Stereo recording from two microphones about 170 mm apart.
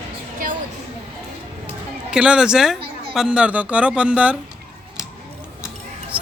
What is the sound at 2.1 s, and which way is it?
Speech, 5° right (ahead or behind).